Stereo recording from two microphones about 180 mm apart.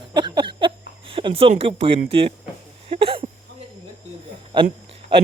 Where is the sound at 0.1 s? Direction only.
25° right (ahead or behind).